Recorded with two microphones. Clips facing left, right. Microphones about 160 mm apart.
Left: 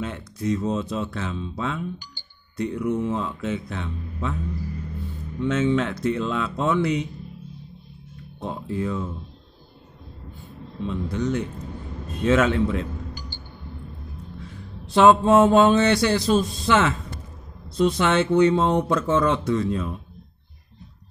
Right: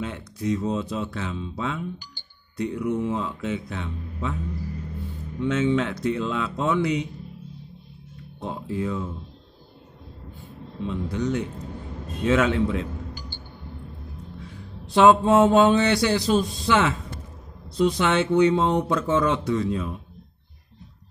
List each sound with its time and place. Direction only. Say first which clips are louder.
0.0 s speech: left 1 dB; 15° right (ahead or behind)
5.4 s speech: left 1 dB; 15° right (ahead or behind)
8.4 s speech: left 1 dB; 15° right (ahead or behind)
10.8 s speech: left 1 dB; 15° right (ahead or behind)
15.0 s speech: left 1 dB; 15° right (ahead or behind)